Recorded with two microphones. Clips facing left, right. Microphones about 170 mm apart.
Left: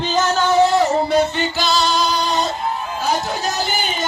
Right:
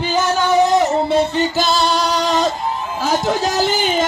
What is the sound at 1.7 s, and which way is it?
Music, 60° right (ahead or behind).